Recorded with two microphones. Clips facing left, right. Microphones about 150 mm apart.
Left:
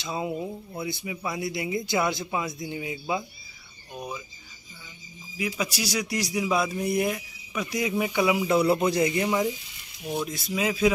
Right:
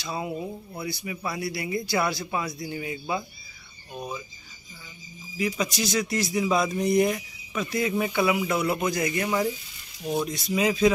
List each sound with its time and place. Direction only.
0.0 s a man's voice: 20° left (ahead or behind)
5.6 s speech: 10° left (ahead or behind)
10.2 s speech: centre (ahead or behind)